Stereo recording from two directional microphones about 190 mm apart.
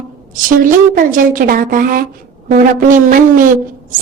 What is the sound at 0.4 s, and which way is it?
Speech, 45° right (ahead or behind).